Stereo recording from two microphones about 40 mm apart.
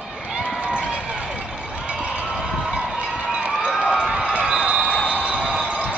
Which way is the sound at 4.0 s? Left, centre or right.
Centre.